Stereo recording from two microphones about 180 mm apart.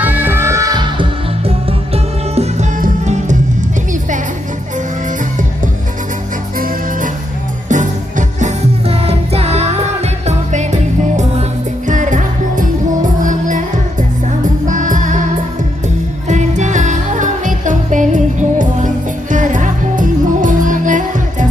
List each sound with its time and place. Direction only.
0.0 s music: 10° right (ahead or behind)
2.3 s music: 35° right (ahead or behind)
7.7 s music: 45° right (ahead or behind)
11.9 s music: 45° right (ahead or behind)
14.7 s music: 45° right (ahead or behind)
16.3 s music: 40° right (ahead or behind)